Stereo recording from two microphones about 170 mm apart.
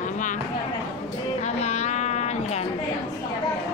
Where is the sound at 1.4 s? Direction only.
40° left (ahead or behind).